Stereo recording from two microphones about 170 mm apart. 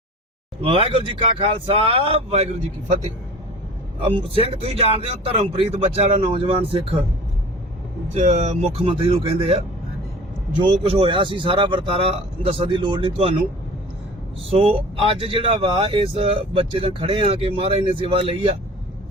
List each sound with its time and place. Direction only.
0.6 s speech: 35° right (ahead or behind)
4.0 s speech: 30° right (ahead or behind)
8.1 s speech: 40° right (ahead or behind)
10.6 s a man's voice: 30° right (ahead or behind)
14.5 s speech: 35° right (ahead or behind)